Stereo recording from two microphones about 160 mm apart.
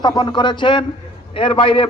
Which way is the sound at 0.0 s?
30° left (ahead or behind).